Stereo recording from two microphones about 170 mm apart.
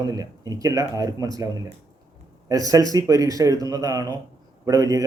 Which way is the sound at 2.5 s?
20° right (ahead or behind).